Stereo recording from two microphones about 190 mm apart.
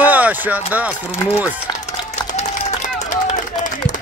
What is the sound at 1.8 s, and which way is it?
Run, 40° left (ahead or behind).